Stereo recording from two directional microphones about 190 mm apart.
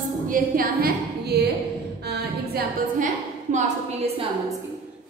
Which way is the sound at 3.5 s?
40° right (ahead or behind).